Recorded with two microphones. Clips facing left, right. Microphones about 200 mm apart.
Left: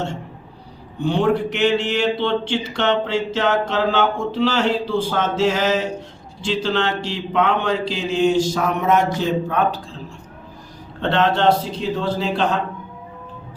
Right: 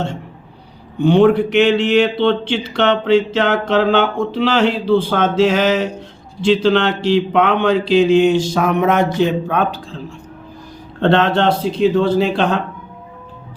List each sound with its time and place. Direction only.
1.0 s speech: 65° right (ahead or behind)
11.0 s speech: 60° right (ahead or behind)